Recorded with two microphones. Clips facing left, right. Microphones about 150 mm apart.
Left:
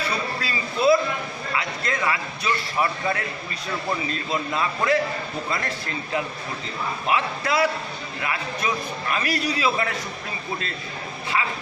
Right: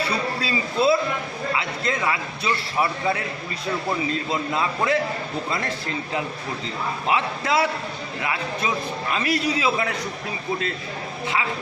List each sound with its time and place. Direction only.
0.4 s a man's voice: 25° right (ahead or behind)
4.1 s a man's voice: 20° right (ahead or behind)
7.1 s a man's voice: 25° right (ahead or behind)